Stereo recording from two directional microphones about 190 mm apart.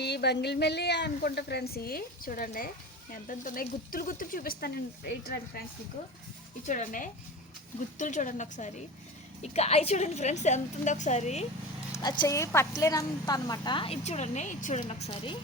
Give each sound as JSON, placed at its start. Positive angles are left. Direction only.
{"t": 0.0, "sound": "speech", "side_deg": 60}
{"t": 6.7, "sound": "a woman's voice", "side_deg": 40}
{"t": 11.9, "sound": "speech", "side_deg": 20}